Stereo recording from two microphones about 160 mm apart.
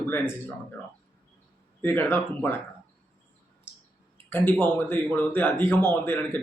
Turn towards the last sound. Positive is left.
turn(degrees=10)  # may be behind; listen again after turning